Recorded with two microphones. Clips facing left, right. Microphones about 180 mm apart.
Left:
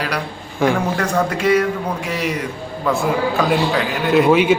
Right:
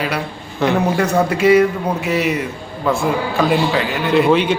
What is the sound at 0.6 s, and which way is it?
Speech, 10° left (ahead or behind).